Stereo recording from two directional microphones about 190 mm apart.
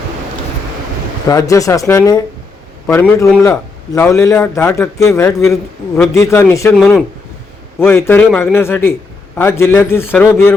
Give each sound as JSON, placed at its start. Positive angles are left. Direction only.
{"t": 1.3, "sound": "a man's voice", "side_deg": 20}
{"t": 6.7, "sound": "speech", "side_deg": 0}
{"t": 7.8, "sound": "a man's voice", "side_deg": 10}